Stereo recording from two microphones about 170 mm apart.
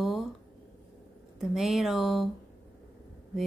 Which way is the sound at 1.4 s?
Centre (ahead or behind).